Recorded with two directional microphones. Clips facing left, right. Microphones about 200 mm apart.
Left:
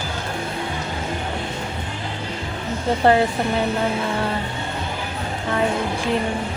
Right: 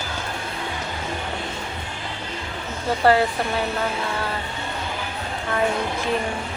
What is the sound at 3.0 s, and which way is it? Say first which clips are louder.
Speech: left 1 dB; 20° left (ahead or behind).